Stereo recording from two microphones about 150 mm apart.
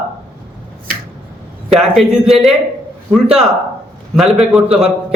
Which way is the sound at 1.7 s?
Centre (ahead or behind).